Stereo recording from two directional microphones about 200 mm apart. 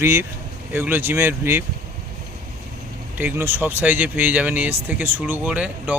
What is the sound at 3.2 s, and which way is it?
Speech, 10° right (ahead or behind).